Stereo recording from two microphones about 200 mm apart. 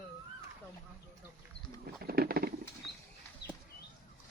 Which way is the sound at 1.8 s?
50° right (ahead or behind).